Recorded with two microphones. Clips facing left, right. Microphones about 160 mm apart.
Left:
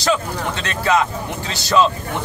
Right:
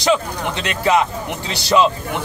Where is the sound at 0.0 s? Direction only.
20° right (ahead or behind).